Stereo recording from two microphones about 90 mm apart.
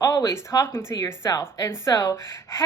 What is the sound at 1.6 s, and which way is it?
A woman's voice, 35° left (ahead or behind).